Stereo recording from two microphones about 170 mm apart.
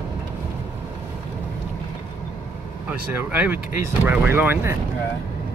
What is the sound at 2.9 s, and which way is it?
Speech, 10° right (ahead or behind).